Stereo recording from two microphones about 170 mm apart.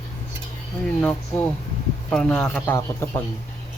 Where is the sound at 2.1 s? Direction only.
5° left (ahead or behind).